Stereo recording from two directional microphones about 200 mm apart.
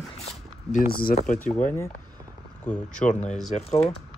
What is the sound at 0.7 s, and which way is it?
Speech, 50° left (ahead or behind).